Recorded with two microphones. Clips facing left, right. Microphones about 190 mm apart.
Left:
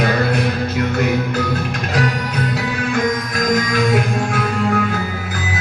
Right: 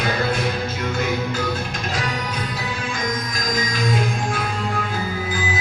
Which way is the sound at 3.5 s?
65° left (ahead or behind).